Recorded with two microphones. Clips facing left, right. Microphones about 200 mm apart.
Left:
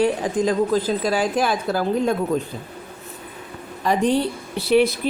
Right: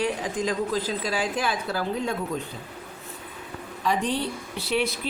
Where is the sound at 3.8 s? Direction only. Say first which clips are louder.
Left 7 dB; 45° left (ahead or behind).